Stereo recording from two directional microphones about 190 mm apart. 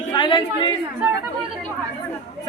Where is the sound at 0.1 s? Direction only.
25° left (ahead or behind).